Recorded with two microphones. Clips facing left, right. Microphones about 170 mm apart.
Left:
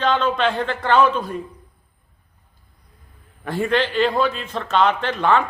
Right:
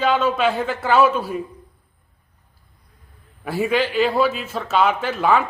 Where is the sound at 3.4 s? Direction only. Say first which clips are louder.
Even; 5° right (ahead or behind).